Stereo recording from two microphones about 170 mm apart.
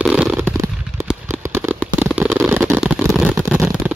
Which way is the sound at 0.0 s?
5° right (ahead or behind).